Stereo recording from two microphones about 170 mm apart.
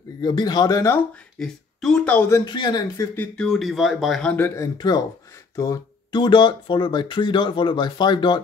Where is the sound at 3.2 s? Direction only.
5° left (ahead or behind).